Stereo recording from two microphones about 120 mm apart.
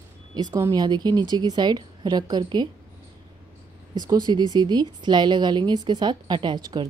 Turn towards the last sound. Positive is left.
turn(degrees=-40)  # may be behind; listen again after turning